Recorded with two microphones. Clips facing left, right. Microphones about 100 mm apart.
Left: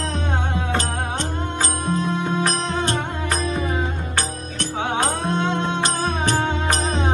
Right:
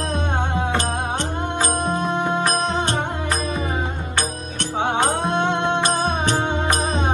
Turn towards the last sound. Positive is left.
turn(degrees=-20)  # may be behind; listen again after turning